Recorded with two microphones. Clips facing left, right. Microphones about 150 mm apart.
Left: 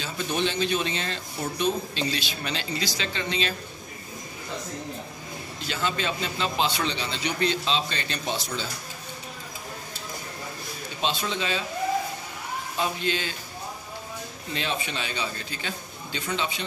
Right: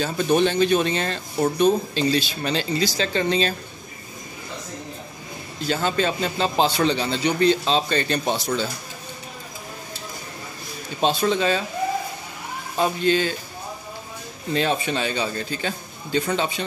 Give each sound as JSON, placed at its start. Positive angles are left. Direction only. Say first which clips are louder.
{"t": 0.0, "sound": "speech", "louder": "right 8 dB", "side_deg": -50}
{"t": 5.7, "sound": "a man's voice", "louder": "right 6 dB", "side_deg": -40}
{"t": 11.0, "sound": "speech", "louder": "right 8 dB", "side_deg": -45}
{"t": 12.7, "sound": "speech", "louder": "right 8 dB", "side_deg": -40}
{"t": 14.5, "sound": "speech", "louder": "right 8 dB", "side_deg": -45}